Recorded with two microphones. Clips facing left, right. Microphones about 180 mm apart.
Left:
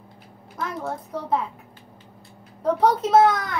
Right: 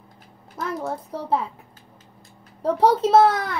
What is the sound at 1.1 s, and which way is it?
Speech, 30° right (ahead or behind).